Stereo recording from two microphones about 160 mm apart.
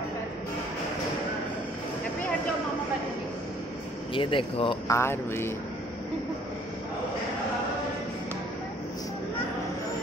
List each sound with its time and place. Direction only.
4.1 s speech: 30° left (ahead or behind)
4.8 s speech: 15° left (ahead or behind)